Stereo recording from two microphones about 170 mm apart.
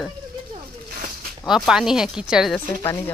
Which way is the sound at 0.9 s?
55° right (ahead or behind).